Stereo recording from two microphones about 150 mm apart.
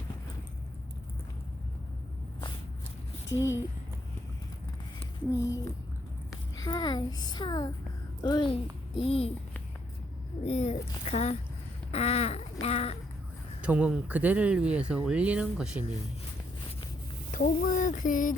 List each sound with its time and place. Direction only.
3.2 s a child's voice: 20° left (ahead or behind)
5.3 s a child's voice: 20° left (ahead or behind)
6.6 s a child's voice: 25° left (ahead or behind)
10.4 s speech: 45° left (ahead or behind)
11.9 s a sound: 45° left (ahead or behind)
12.6 s speech: 45° left (ahead or behind)
13.6 s speech: 10° right (ahead or behind)
17.3 s a sound: 60° left (ahead or behind)